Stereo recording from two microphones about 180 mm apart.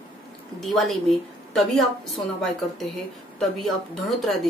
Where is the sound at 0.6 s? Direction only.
Centre (ahead or behind).